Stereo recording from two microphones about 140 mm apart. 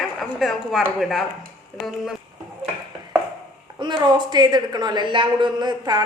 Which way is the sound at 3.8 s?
30° right (ahead or behind).